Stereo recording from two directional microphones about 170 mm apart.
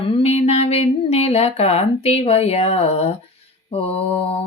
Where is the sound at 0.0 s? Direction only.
35° left (ahead or behind).